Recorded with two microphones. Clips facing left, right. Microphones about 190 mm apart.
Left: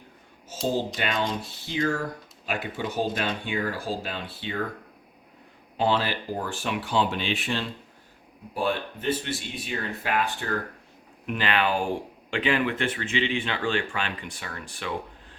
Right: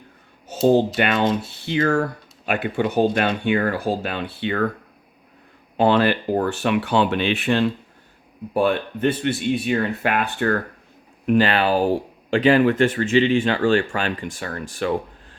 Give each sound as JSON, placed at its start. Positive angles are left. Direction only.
{"t": 0.5, "sound": "a sound", "side_deg": -65}
{"t": 0.9, "sound": "speech", "side_deg": -65}
{"t": 5.7, "sound": "speech", "side_deg": -60}
{"t": 11.3, "sound": "speech", "side_deg": -40}